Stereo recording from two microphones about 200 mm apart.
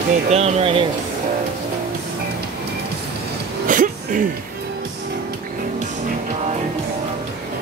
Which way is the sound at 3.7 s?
40° right (ahead or behind).